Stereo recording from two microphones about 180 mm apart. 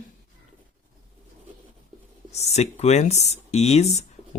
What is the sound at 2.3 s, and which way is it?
Speech, 35° left (ahead or behind).